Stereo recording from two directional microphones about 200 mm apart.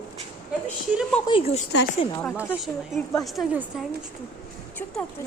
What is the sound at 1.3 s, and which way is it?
Speech, 30° left (ahead or behind).